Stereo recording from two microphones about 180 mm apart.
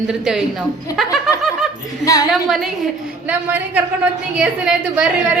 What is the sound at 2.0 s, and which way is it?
Speech, 20° left (ahead or behind).